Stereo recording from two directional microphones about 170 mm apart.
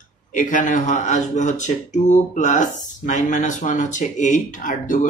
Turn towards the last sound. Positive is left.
turn(degrees=50)  # may be behind; listen again after turning